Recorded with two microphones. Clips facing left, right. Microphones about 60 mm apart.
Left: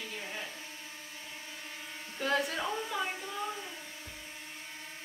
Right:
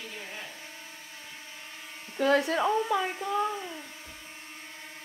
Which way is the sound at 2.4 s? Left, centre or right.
Right.